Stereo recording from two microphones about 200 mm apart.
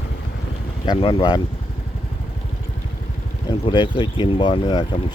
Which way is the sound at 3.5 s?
25° left (ahead or behind).